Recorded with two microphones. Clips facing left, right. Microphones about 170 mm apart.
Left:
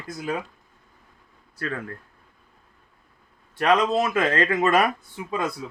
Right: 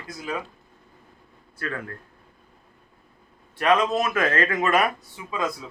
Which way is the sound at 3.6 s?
35° left (ahead or behind).